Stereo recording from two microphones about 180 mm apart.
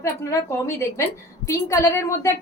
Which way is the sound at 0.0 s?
15° left (ahead or behind).